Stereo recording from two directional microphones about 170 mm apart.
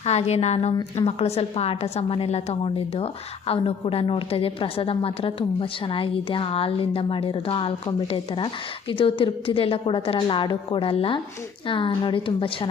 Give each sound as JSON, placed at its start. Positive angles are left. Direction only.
{"t": 0.0, "sound": "a woman's voice", "side_deg": 40}